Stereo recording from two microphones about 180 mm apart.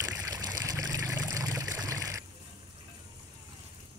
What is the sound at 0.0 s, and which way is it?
Water, 20° right (ahead or behind).